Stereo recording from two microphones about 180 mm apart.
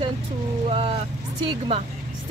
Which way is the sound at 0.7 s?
30° right (ahead or behind).